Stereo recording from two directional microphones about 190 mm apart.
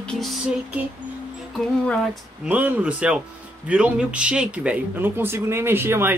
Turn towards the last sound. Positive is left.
turn(degrees=-10)  # may be behind; listen again after turning